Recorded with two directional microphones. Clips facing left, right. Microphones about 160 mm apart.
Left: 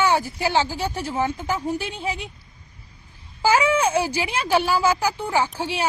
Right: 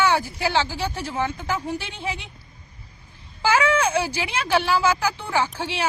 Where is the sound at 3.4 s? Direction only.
15° left (ahead or behind).